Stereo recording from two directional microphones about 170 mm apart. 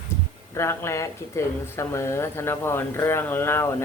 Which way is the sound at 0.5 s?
15° left (ahead or behind).